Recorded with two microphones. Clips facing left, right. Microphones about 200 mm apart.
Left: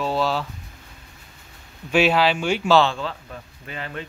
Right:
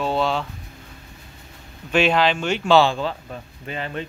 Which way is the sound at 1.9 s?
5° left (ahead or behind).